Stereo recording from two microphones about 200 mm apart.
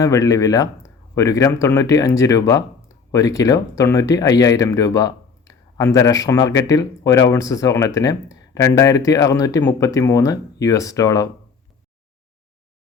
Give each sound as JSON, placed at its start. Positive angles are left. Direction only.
{"t": 0.0, "sound": "speech", "side_deg": 15}